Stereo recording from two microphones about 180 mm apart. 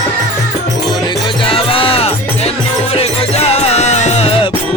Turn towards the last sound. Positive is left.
turn(degrees=40)  # may be behind; listen again after turning